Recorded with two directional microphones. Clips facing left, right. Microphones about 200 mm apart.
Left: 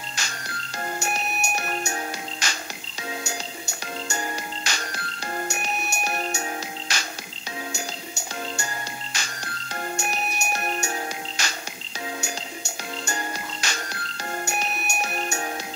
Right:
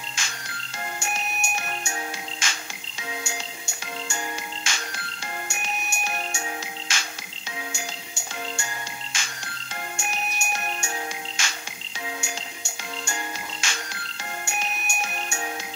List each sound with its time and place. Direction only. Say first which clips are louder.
0.2 s music: left 2 dB; 40° left (ahead or behind)
13.0 s music: left 3 dB; 40° left (ahead or behind)